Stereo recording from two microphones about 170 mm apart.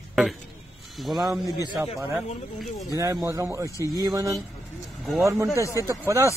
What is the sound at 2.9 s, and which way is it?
Speech, 20° right (ahead or behind).